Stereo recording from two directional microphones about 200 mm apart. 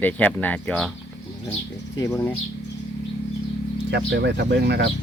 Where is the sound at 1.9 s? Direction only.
15° left (ahead or behind).